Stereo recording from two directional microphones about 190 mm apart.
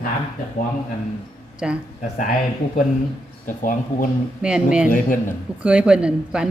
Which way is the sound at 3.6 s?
45° left (ahead or behind).